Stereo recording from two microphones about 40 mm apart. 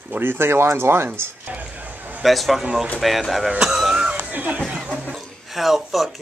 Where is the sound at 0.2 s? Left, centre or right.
Right.